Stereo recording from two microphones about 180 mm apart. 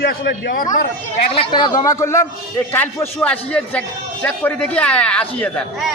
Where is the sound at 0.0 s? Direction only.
60° left (ahead or behind).